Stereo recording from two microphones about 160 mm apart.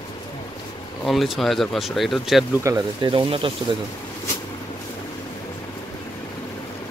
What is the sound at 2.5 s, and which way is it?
Speech, 20° right (ahead or behind).